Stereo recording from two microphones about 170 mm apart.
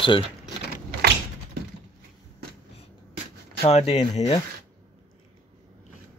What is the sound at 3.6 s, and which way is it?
Speech, 40° left (ahead or behind).